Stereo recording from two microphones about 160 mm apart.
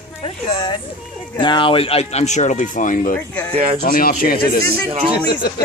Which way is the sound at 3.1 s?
10° left (ahead or behind).